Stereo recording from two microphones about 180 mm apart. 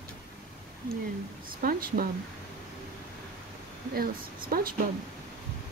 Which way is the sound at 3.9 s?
50° right (ahead or behind).